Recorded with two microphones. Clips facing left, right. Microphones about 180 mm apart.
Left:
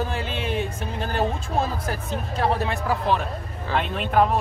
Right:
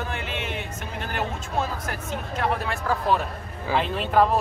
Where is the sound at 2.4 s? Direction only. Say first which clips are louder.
Left 3 dB; 30° left (ahead or behind).